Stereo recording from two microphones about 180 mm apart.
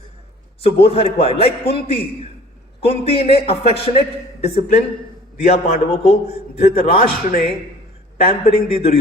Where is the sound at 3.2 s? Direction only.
35° left (ahead or behind).